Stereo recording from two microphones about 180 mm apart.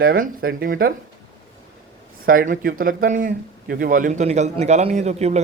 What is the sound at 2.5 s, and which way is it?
Speech, 55° right (ahead or behind).